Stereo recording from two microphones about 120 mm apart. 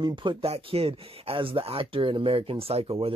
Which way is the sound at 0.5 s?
55° right (ahead or behind).